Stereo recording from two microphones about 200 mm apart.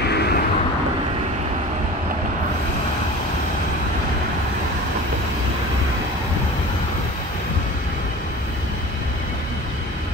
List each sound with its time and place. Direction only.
0.0 s vehicle: 55° left (ahead or behind)